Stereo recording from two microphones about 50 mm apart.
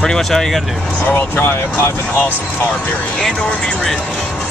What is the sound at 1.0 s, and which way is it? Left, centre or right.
Speech, left.